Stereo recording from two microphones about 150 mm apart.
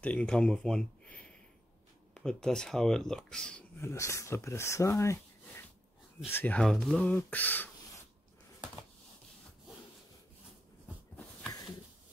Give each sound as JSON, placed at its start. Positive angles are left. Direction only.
{"t": 0.0, "sound": "speech", "side_deg": 10}
{"t": 3.8, "sound": "speech", "side_deg": 20}